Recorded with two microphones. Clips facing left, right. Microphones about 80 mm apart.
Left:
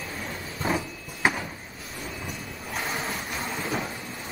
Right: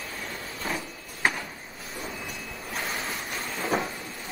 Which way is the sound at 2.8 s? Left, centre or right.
Centre.